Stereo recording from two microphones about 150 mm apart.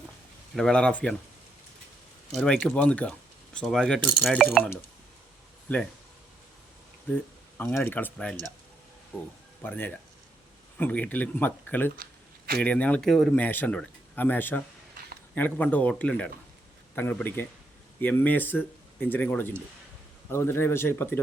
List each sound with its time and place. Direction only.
0.5 s speech: 5° left (ahead or behind)
2.3 s speech: 5° left (ahead or behind)
5.6 s speech: 10° left (ahead or behind)
7.6 s speech: 15° left (ahead or behind)
13.4 s speech: 10° left (ahead or behind)